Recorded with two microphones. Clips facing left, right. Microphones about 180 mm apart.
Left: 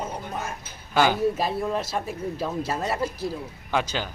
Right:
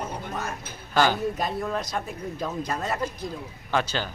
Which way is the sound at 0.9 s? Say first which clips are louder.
Left 2 dB; 10° left (ahead or behind).